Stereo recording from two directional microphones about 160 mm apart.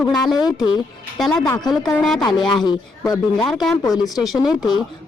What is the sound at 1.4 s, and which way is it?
Speech, 25° left (ahead or behind).